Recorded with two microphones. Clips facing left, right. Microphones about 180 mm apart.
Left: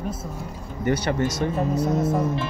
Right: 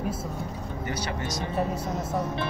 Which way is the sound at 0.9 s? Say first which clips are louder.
Left 11 dB; 60° left (ahead or behind).